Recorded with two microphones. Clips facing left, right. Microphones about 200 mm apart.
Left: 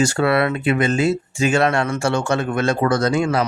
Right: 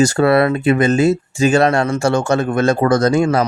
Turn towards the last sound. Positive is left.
turn(degrees=-45)  # may be behind; listen again after turning